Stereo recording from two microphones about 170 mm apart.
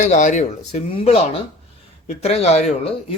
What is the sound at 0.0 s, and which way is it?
A man's voice, 45° left (ahead or behind).